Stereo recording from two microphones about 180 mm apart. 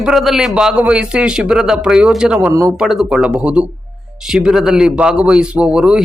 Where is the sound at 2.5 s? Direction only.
20° right (ahead or behind).